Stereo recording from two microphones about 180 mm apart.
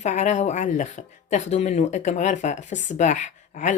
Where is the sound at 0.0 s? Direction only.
40° left (ahead or behind).